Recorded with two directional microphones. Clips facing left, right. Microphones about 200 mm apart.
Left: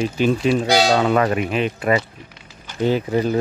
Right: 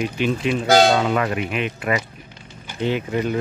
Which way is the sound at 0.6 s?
50° right (ahead or behind).